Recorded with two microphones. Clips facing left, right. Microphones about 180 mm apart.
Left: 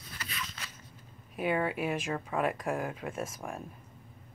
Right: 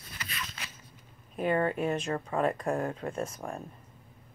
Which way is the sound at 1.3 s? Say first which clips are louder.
Right 2 dB; 5° left (ahead or behind).